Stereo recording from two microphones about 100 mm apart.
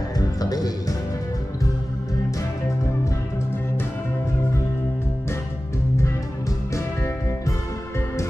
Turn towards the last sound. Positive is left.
turn(degrees=30)  # may be behind; listen again after turning